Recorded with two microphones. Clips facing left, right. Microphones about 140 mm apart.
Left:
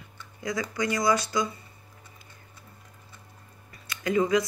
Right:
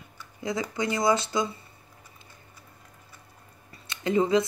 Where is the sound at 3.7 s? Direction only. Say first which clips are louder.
Right 1 dB; 25° right (ahead or behind).